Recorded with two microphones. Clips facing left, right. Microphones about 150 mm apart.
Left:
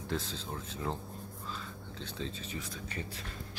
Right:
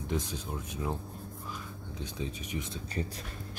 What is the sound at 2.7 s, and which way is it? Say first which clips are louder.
Speech: right 5 dB; 35° right (ahead or behind).